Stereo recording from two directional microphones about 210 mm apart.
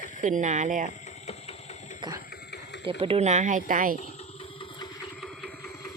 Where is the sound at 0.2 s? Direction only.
35° right (ahead or behind).